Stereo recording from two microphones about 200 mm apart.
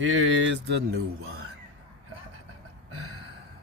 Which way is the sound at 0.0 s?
70° right (ahead or behind).